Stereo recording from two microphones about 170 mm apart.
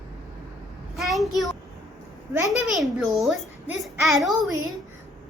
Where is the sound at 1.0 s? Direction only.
Centre (ahead or behind).